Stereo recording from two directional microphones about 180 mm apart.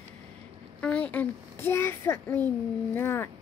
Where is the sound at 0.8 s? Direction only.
10° left (ahead or behind).